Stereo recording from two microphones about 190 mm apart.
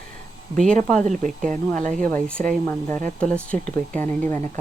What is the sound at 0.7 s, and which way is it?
Speech, 40° right (ahead or behind).